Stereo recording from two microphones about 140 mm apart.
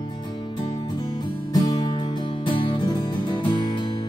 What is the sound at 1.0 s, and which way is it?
Music, 25° left (ahead or behind).